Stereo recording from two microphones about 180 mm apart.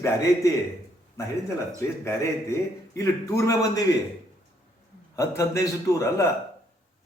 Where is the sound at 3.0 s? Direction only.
15° left (ahead or behind).